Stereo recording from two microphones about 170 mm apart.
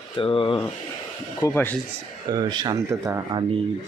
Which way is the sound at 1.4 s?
15° left (ahead or behind).